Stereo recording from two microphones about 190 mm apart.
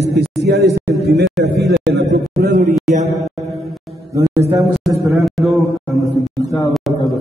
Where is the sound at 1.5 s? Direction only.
60° right (ahead or behind).